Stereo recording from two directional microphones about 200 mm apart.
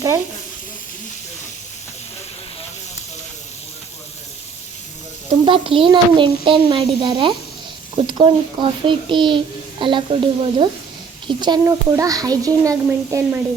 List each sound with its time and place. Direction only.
5.5 s a child's voice: 25° right (ahead or behind)